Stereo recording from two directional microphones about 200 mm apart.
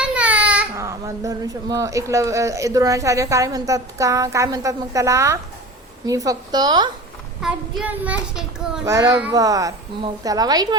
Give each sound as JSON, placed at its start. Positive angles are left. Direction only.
{"t": 0.0, "sound": "a woman's voice", "side_deg": -5}
{"t": 7.4, "sound": "child singing", "side_deg": -5}
{"t": 9.3, "sound": "a woman's voice", "side_deg": -20}